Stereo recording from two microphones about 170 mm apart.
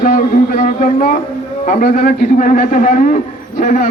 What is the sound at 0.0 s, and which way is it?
A man's voice, 50° left (ahead or behind).